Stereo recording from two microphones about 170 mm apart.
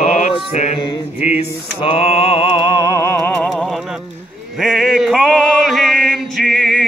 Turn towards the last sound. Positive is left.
turn(degrees=0)  # may be behind; listen again after turning